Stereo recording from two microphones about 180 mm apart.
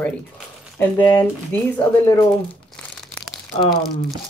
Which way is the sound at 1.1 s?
10° left (ahead or behind).